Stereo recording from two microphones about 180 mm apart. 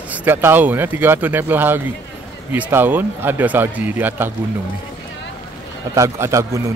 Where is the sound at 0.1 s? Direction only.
10° right (ahead or behind).